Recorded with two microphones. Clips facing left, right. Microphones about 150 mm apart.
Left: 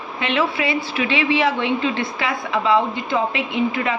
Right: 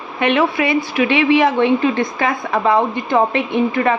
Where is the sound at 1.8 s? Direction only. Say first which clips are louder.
Right 5 dB; 45° right (ahead or behind).